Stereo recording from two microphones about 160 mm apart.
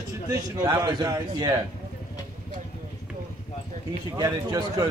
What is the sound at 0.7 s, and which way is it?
Speech, 25° right (ahead or behind).